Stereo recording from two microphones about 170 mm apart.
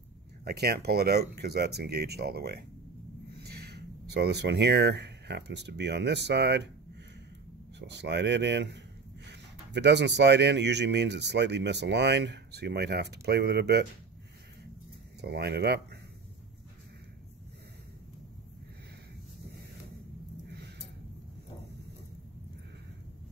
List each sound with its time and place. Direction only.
0.5 s speech: 70° right (ahead or behind); by 6.7 s 90° right
7.8 s speech: 90° right; by 13.8 s 75° right (ahead or behind)
15.2 s speech: 75° right (ahead or behind)
20.4 s a sound: 80° right